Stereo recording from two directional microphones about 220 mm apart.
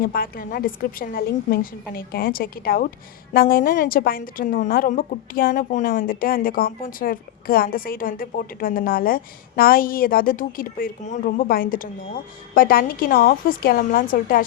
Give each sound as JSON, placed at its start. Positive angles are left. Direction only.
{"t": 0.0, "sound": "a woman's voice", "side_deg": 40}